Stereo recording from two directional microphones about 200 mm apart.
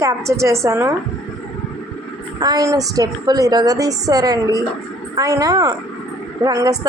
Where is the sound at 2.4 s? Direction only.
20° right (ahead or behind).